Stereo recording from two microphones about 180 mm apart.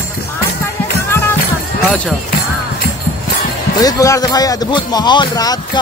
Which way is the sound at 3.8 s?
20° left (ahead or behind).